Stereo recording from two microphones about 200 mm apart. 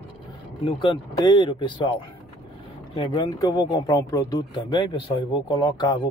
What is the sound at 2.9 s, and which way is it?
Speech, 20° left (ahead or behind).